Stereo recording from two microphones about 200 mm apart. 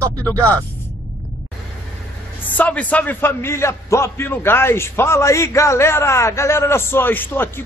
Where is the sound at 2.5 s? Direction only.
5° left (ahead or behind).